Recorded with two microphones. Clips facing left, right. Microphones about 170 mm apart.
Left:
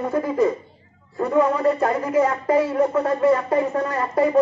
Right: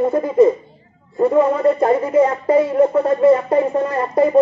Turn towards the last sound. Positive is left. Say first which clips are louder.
# right 4 dB
turn(degrees=-25)  # may be behind; listen again after turning